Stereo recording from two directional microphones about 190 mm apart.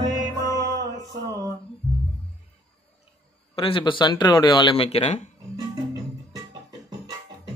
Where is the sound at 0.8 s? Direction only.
20° right (ahead or behind).